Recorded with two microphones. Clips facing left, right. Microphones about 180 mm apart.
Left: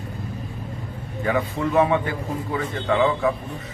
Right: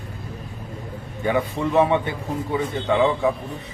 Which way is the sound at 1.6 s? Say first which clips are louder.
Even; 20° right (ahead or behind).